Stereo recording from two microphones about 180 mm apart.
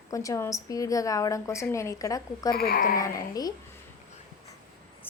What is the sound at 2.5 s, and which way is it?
Speech, 55° left (ahead or behind).